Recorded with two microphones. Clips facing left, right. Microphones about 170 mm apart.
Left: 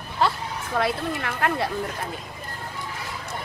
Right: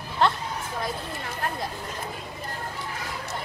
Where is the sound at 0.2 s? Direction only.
5° left (ahead or behind).